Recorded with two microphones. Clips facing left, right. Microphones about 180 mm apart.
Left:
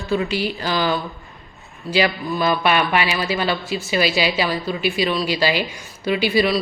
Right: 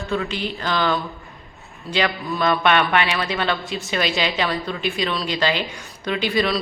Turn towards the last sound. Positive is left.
turn(degrees=5)  # may be behind; listen again after turning